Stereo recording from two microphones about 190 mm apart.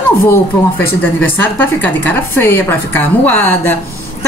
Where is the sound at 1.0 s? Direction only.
10° left (ahead or behind).